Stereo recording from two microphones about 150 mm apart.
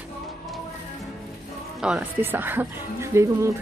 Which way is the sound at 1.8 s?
5° right (ahead or behind).